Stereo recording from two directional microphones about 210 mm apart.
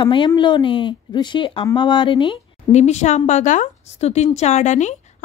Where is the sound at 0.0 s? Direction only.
25° left (ahead or behind).